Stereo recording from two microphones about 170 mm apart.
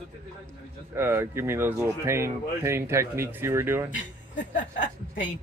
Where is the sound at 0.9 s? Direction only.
15° right (ahead or behind).